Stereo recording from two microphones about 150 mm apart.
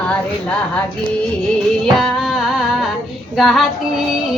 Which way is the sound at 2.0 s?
Centre (ahead or behind).